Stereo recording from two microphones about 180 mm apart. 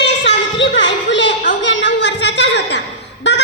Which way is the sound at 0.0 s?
75° left (ahead or behind).